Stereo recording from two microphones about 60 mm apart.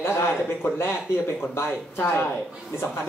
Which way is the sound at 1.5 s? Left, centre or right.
Left.